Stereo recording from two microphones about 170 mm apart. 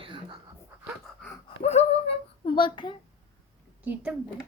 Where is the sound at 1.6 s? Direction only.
35° left (ahead or behind).